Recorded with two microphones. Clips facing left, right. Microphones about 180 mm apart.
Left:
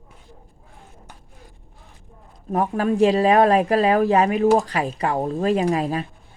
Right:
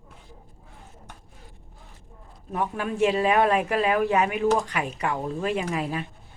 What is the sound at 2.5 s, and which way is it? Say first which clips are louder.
Speech: left 7 dB; 40° left (ahead or behind).